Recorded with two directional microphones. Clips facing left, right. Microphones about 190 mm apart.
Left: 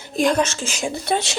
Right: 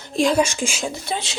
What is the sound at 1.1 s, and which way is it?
Speech, 65° left (ahead or behind).